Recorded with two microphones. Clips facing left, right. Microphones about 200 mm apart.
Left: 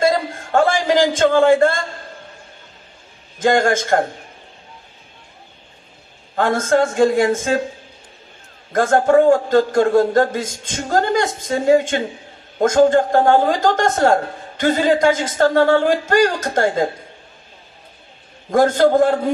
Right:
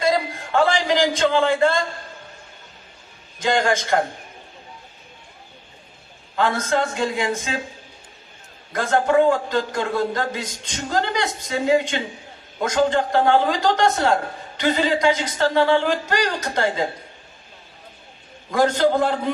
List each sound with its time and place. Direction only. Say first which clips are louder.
0.0 s a sound: left 3 dB; 50° left (ahead or behind)
3.3 s speech: left 5 dB; 50° left (ahead or behind)
6.3 s speech: left 5 dB; 50° left (ahead or behind)
8.7 s speech: left 5 dB; 50° left (ahead or behind)
18.5 s speech: left 5 dB; 50° left (ahead or behind)